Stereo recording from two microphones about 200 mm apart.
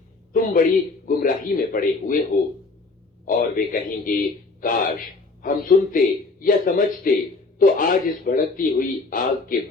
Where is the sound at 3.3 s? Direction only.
45° left (ahead or behind).